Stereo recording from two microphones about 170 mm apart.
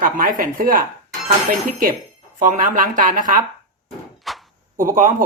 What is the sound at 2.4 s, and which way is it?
Speech, 50° right (ahead or behind).